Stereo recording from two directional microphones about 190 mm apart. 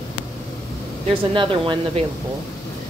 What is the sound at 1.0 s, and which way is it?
Speech, 25° right (ahead or behind).